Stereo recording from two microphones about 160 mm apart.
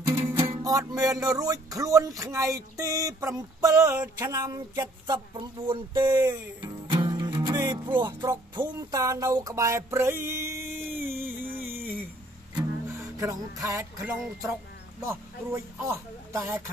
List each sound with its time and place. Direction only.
0.0 s music: 30° right (ahead or behind)
1.1 s a sound: 20° right (ahead or behind)
4.2 s speech: 20° right (ahead or behind)
10.9 s a sound: 15° right (ahead or behind)
12.5 s music: 15° right (ahead or behind)
14.4 s a man's voice: 20° right (ahead or behind)